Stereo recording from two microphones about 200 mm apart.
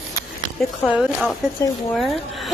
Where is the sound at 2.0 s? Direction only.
Centre (ahead or behind).